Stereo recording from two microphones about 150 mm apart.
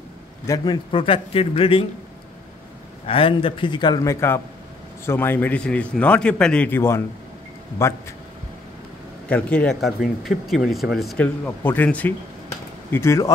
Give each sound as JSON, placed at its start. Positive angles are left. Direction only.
{"t": 0.5, "sound": "a man's voice", "side_deg": 30}
{"t": 3.1, "sound": "a man's voice", "side_deg": 40}
{"t": 9.3, "sound": "speech", "side_deg": 10}
{"t": 11.4, "sound": "speech", "side_deg": 10}